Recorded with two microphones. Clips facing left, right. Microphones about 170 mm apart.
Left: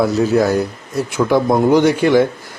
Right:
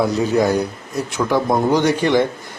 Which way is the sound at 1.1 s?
10° left (ahead or behind).